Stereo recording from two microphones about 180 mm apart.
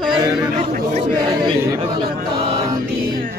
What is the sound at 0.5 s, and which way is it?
Speech, 45° right (ahead or behind).